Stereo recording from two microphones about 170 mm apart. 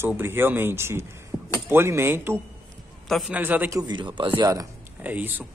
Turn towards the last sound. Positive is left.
turn(degrees=-10)  # may be behind; listen again after turning